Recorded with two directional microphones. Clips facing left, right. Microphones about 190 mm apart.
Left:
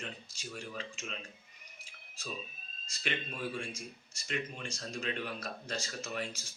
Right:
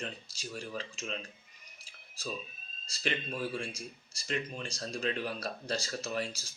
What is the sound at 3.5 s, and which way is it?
Speech, 35° right (ahead or behind).